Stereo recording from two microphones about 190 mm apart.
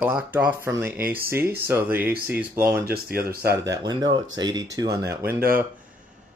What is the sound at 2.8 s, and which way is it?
Speech, 55° right (ahead or behind).